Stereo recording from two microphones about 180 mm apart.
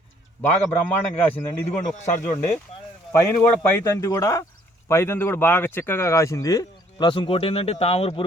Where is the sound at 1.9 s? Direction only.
40° left (ahead or behind).